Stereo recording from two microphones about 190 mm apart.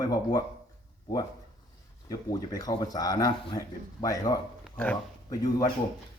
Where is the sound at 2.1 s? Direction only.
20° left (ahead or behind).